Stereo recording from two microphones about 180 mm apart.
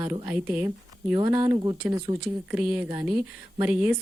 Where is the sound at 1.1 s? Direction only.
25° right (ahead or behind).